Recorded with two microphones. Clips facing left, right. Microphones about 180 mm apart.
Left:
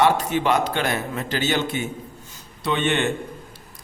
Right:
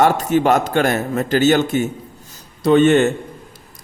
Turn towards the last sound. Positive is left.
turn(degrees=-40)  # may be behind; listen again after turning